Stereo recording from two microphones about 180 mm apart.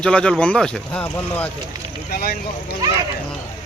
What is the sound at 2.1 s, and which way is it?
Speech, 60° left (ahead or behind).